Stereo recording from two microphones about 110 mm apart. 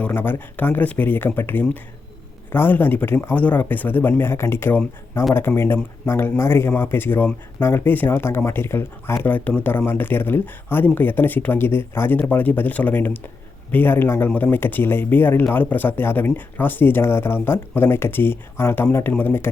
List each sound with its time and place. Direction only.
0.0 s a man's voice: 15° left (ahead or behind)